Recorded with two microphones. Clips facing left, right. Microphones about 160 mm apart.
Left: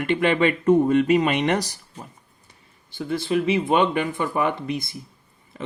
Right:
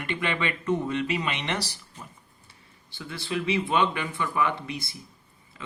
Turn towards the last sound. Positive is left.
turn(degrees=45)  # may be behind; listen again after turning